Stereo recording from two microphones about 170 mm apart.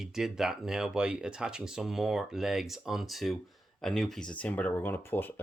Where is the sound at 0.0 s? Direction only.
Centre (ahead or behind).